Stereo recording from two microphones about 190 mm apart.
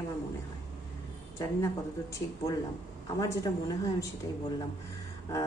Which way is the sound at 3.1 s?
20° left (ahead or behind).